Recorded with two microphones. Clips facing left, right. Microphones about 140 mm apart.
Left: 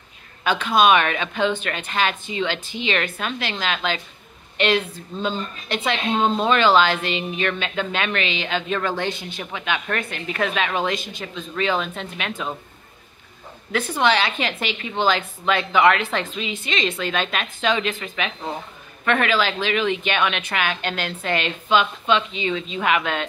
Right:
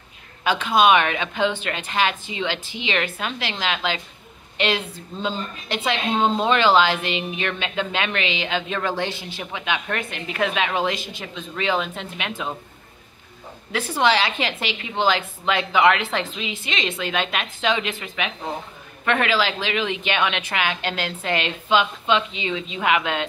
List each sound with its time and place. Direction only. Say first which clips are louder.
0.4 s a woman's voice: even; 20° right (ahead or behind)
13.7 s a woman's voice: even; 30° right (ahead or behind)